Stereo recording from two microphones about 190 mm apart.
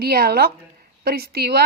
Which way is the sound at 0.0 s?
55° right (ahead or behind).